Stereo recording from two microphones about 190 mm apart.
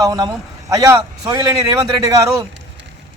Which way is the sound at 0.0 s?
20° right (ahead or behind).